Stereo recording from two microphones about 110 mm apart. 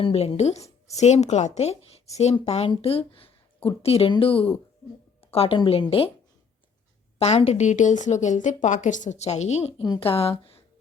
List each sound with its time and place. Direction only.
0.0 s speech: 60° left (ahead or behind)
2.6 s a woman's voice: 60° left (ahead or behind)
5.2 s music: 60° left (ahead or behind)
5.5 s a woman's voice: 50° left (ahead or behind)
7.2 s speech: 70° left (ahead or behind)
10.0 s a woman's voice: 60° left (ahead or behind)